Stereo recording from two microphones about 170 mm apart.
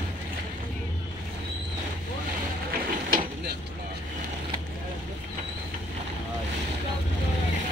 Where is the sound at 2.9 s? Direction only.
55° right (ahead or behind).